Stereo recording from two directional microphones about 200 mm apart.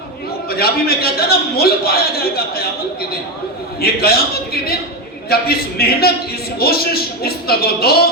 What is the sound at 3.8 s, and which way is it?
A man's voice, 50° left (ahead or behind).